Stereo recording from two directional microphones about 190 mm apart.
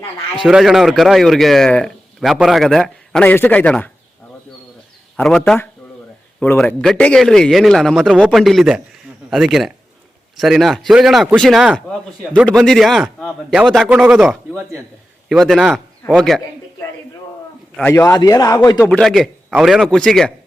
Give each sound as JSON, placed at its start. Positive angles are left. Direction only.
{"t": 0.4, "sound": "a man's voice", "side_deg": 0}
{"t": 5.1, "sound": "a man's voice", "side_deg": 5}
{"t": 17.7, "sound": "a man's voice", "side_deg": 10}
{"t": 18.9, "sound": "a man's voice", "side_deg": 0}